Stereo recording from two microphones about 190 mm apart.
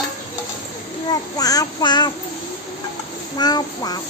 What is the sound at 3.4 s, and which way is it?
Speech, 20° left (ahead or behind).